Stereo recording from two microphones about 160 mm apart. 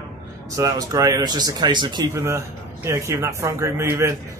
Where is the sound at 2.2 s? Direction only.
15° right (ahead or behind).